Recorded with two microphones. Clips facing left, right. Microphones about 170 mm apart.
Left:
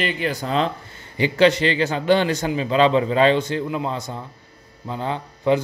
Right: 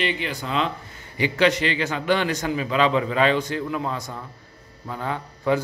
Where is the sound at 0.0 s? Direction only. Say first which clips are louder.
Left 3 dB; 40° left (ahead or behind).